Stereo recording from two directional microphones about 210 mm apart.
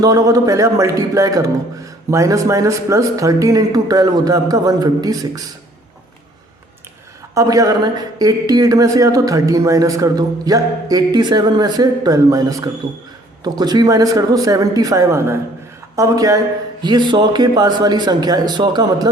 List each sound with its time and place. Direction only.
0.0 s speech: 15° right (ahead or behind)
7.3 s a man's voice: 15° right (ahead or behind)